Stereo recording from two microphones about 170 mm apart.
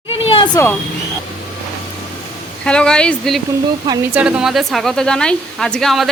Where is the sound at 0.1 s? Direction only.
35° left (ahead or behind).